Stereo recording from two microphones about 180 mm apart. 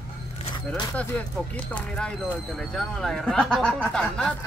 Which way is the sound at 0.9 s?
5° left (ahead or behind).